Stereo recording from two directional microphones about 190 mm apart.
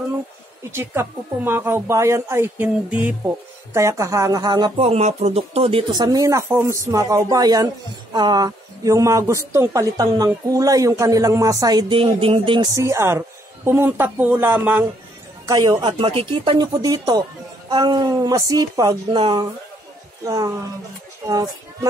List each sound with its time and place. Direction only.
0.7 s a woman's voice: 10° right (ahead or behind); by 6.0 s 30° right (ahead or behind)
6.0 s a woman's voice: 15° right (ahead or behind)
12.8 s a woman's voice: 15° right (ahead or behind)